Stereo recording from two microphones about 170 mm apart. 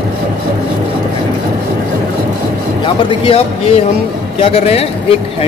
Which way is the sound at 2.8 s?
30° left (ahead or behind).